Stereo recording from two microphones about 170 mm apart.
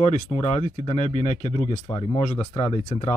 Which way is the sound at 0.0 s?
40° left (ahead or behind).